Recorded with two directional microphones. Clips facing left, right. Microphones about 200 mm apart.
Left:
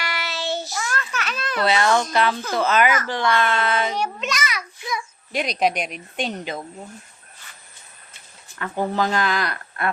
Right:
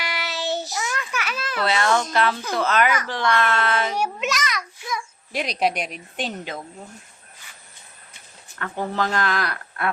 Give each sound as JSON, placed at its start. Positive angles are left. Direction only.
{"t": 0.0, "sound": "child singing", "side_deg": -15}
{"t": 2.5, "sound": "speech", "side_deg": 0}
{"t": 4.4, "sound": "babbling", "side_deg": 5}
{"t": 6.1, "sound": "speech", "side_deg": 0}
{"t": 8.5, "sound": "speech", "side_deg": 5}